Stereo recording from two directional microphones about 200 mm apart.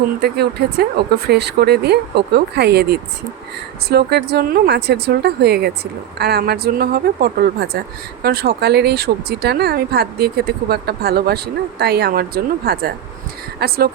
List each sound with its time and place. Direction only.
0.2 s speech: 55° right (ahead or behind)